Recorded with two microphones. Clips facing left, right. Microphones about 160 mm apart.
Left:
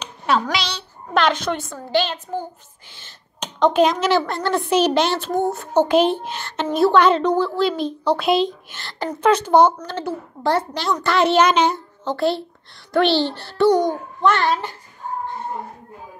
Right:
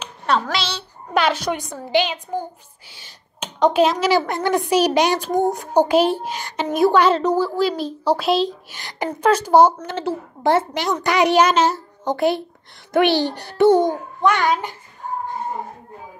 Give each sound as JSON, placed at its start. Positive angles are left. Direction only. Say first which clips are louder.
{"t": 0.0, "sound": "a woman's voice", "louder": "even", "side_deg": 0}
{"t": 8.7, "sound": "a woman's voice", "louder": "right 1 dB", "side_deg": -15}
{"t": 9.8, "sound": "a woman's voice", "louder": "right 2 dB", "side_deg": -20}
{"t": 12.1, "sound": "a woman's voice", "louder": "right 1 dB", "side_deg": -20}
{"t": 14.2, "sound": "a woman's voice", "louder": "even", "side_deg": -15}